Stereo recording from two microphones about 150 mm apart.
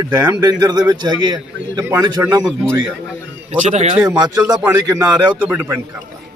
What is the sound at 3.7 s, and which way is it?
Speech, 40° right (ahead or behind).